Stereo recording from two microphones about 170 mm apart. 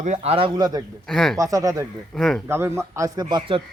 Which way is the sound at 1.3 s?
20° right (ahead or behind).